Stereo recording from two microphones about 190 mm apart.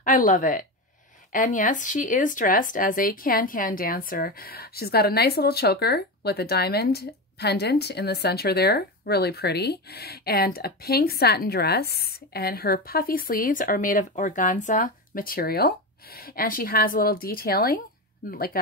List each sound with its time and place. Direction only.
0.0 s a woman's voice: 45° left (ahead or behind)